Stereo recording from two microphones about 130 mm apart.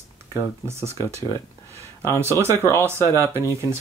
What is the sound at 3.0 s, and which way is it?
Speech, 20° left (ahead or behind).